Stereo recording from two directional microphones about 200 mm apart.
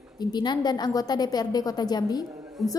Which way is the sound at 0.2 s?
20° left (ahead or behind).